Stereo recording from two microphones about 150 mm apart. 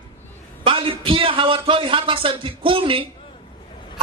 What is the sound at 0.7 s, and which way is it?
A man's voice, 35° right (ahead or behind).